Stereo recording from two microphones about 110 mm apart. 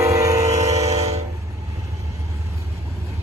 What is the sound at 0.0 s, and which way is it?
Train, 30° right (ahead or behind).